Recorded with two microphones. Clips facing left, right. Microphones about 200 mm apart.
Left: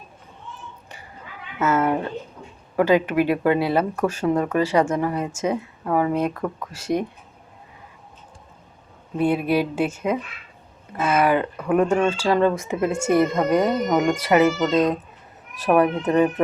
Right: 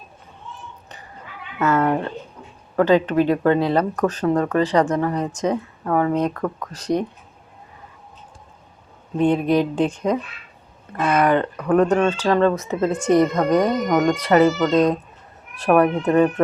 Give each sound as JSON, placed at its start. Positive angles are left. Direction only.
{"t": 1.7, "sound": "a sound", "side_deg": 10}
{"t": 2.7, "sound": "speech", "side_deg": 10}
{"t": 9.1, "sound": "speech", "side_deg": 10}
{"t": 14.7, "sound": "speech", "side_deg": 0}
{"t": 15.7, "sound": "speech", "side_deg": 20}